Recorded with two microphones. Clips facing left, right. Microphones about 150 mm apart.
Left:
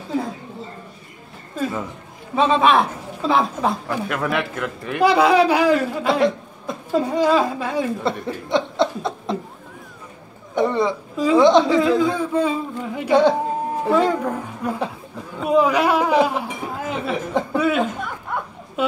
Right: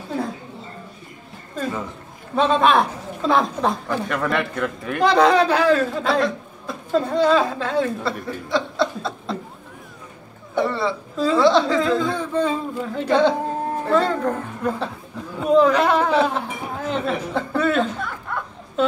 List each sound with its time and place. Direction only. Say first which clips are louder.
2.3 s a woman's voice: left 1 dB; centre (ahead or behind)
8.5 s chuckle: left 2 dB; 20° left (ahead or behind)
10.5 s a woman's voice: left 2 dB; 15° left (ahead or behind)
18.3 s dog: left 3 dB; 15° left (ahead or behind)
18.8 s a sound: right 2 dB; 10° left (ahead or behind)